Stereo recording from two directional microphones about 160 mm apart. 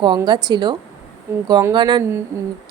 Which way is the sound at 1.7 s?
30° right (ahead or behind).